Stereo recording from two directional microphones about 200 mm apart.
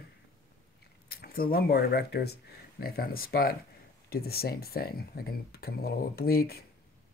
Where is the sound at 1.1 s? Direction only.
50° left (ahead or behind).